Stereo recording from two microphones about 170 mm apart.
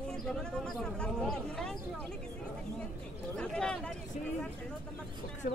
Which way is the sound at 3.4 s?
5° left (ahead or behind).